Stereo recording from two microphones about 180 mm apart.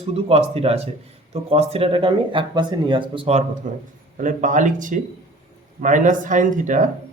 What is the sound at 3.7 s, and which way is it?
Speech, 45° right (ahead or behind).